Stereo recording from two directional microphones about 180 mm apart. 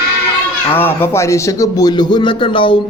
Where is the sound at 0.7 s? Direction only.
10° left (ahead or behind).